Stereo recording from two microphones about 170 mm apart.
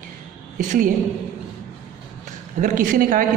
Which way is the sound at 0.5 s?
55° right (ahead or behind).